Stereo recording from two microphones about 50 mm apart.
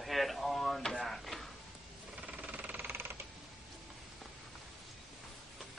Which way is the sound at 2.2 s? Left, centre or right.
Right.